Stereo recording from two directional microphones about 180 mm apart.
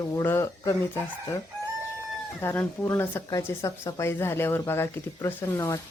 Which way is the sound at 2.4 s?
15° left (ahead or behind).